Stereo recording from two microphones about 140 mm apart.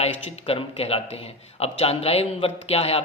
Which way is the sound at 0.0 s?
45° left (ahead or behind).